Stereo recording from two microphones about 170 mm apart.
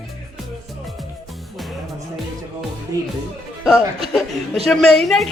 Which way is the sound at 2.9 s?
20° right (ahead or behind).